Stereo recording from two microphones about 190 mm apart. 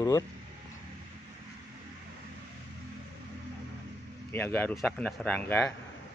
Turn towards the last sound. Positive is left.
turn(degrees=10)  # may be behind; listen again after turning